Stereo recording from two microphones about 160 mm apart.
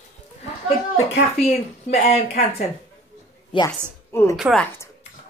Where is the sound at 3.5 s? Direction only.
35° left (ahead or behind).